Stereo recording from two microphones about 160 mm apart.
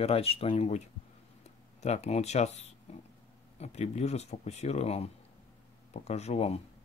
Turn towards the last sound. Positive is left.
turn(degrees=40)  # may be behind; listen again after turning